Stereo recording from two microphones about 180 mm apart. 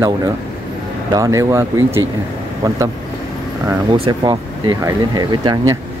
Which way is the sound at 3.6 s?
25° right (ahead or behind).